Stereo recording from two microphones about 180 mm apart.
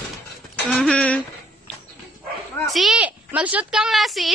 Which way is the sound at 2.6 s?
Centre (ahead or behind).